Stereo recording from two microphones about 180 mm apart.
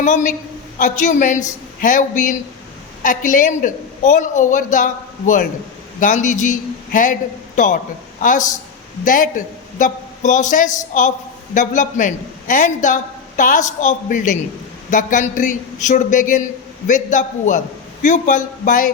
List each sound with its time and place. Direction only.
0.0 s a man's voice: 45° left (ahead or behind)